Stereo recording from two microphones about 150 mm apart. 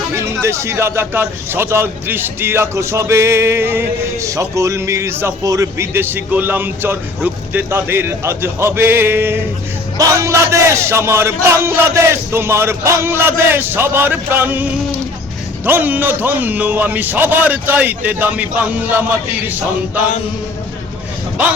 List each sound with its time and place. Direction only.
0.4 s speech: 20° right (ahead or behind)